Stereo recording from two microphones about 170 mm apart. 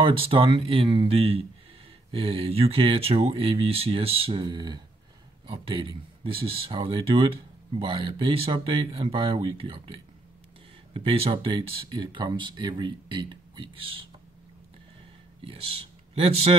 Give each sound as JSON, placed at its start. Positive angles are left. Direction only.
{"t": 0.0, "sound": "speech", "side_deg": -30}
{"t": 15.4, "sound": "speech", "side_deg": -35}